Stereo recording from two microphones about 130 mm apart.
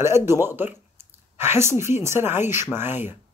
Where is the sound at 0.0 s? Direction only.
20° right (ahead or behind).